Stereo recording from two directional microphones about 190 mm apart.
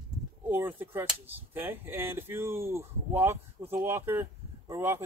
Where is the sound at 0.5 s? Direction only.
10° right (ahead or behind).